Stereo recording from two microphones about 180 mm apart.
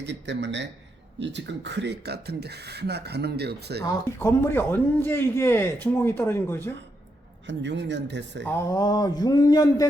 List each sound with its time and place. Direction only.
0.0 s speech: 75° right (ahead or behind)
3.8 s a man's voice: 15° left (ahead or behind)
7.4 s speech: 75° right (ahead or behind)
8.4 s speech: 15° left (ahead or behind)